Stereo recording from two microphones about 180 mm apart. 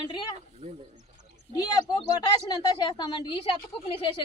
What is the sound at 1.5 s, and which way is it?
A woman's voice, 20° left (ahead or behind).